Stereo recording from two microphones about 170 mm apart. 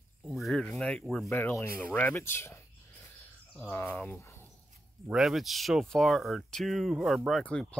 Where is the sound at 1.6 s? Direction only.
60° right (ahead or behind).